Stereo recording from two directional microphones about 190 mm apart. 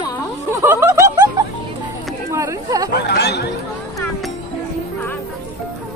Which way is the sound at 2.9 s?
60° left (ahead or behind).